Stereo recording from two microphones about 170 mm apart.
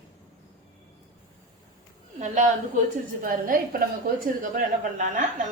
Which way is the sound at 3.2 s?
55° right (ahead or behind).